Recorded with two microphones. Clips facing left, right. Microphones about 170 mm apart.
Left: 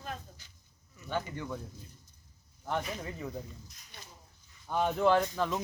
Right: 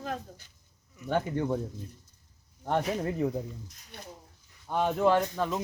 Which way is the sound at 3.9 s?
60° right (ahead or behind).